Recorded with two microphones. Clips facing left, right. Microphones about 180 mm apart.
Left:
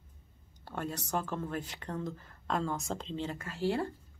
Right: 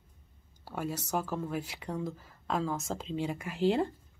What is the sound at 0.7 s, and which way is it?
A woman's voice, 5° right (ahead or behind).